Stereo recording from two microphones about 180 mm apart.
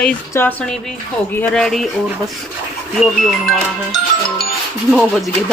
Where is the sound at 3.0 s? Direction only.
Centre (ahead or behind).